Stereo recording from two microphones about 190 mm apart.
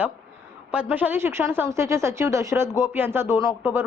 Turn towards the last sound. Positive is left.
turn(degrees=-10)  # may be behind; listen again after turning